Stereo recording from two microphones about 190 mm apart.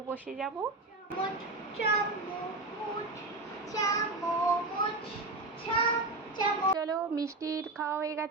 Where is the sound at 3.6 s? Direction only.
20° left (ahead or behind).